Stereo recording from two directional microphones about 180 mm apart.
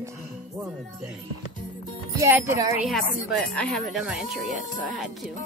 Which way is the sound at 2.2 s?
15° right (ahead or behind).